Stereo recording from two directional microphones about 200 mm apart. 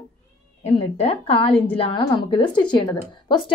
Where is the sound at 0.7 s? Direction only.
30° left (ahead or behind).